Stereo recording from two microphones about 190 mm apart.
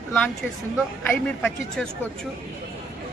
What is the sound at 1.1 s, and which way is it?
Speech, 5° left (ahead or behind).